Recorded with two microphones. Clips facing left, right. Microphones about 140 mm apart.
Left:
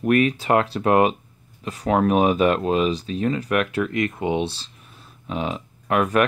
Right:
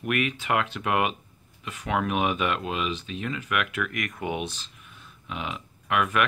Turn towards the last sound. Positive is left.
turn(degrees=35)  # may be behind; listen again after turning